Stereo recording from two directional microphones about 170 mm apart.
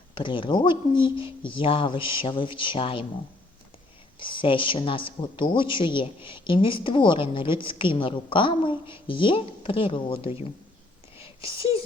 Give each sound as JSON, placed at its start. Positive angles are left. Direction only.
{"t": 0.1, "sound": "a woman's voice", "side_deg": 30}
{"t": 4.2, "sound": "a woman's voice", "side_deg": 30}